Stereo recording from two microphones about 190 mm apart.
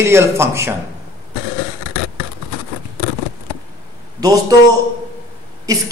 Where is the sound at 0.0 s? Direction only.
15° right (ahead or behind).